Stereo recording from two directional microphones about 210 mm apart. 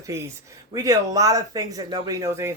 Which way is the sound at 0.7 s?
15° right (ahead or behind).